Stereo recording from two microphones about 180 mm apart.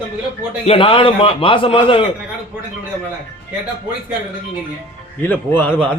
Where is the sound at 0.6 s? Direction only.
30° left (ahead or behind).